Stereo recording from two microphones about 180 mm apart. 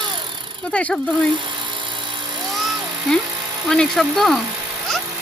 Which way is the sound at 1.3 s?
25° right (ahead or behind).